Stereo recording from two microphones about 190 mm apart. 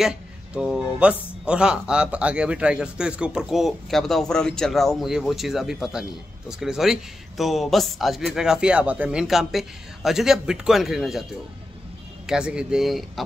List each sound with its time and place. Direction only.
0.0 s speech: centre (ahead or behind)
12.3 s speech: 5° right (ahead or behind)